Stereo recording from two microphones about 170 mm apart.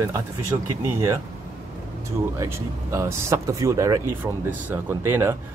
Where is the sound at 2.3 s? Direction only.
15° right (ahead or behind).